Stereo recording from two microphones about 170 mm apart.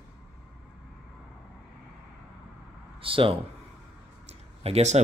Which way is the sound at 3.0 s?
30° right (ahead or behind).